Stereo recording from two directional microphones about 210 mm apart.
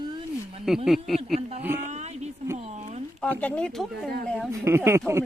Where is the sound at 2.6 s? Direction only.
30° right (ahead or behind).